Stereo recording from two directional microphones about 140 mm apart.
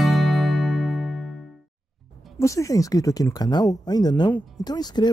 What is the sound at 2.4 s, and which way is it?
Speech, 20° left (ahead or behind).